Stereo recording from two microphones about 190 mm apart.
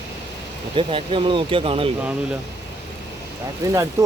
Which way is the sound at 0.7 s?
25° right (ahead or behind).